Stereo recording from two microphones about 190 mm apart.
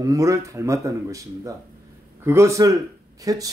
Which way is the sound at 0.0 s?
15° right (ahead or behind).